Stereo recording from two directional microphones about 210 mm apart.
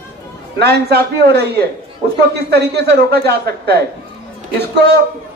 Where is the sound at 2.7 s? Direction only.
50° right (ahead or behind).